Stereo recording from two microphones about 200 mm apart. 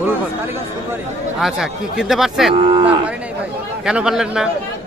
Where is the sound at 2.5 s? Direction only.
25° right (ahead or behind).